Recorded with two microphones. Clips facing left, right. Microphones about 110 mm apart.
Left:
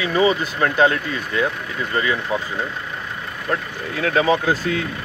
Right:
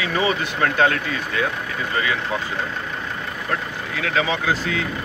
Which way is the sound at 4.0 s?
40° left (ahead or behind).